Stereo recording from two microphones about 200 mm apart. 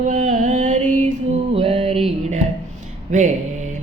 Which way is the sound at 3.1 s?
40° right (ahead or behind).